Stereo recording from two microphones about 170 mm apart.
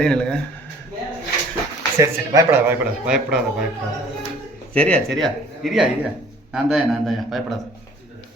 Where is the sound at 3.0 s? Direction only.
5° right (ahead or behind).